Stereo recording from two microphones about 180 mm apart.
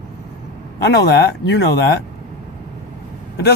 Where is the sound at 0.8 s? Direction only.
65° left (ahead or behind).